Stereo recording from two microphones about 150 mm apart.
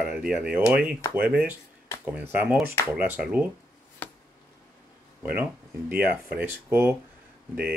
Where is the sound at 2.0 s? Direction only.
10° right (ahead or behind).